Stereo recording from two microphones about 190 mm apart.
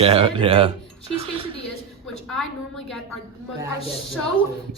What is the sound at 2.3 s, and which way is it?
Speech, centre (ahead or behind).